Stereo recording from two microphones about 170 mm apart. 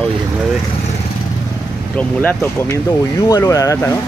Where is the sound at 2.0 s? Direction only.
10° left (ahead or behind).